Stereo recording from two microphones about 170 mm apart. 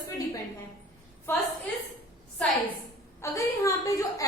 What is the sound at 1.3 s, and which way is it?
Speech, 15° left (ahead or behind).